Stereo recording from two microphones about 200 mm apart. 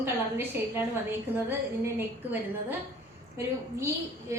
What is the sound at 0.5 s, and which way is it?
Speech, 10° right (ahead or behind).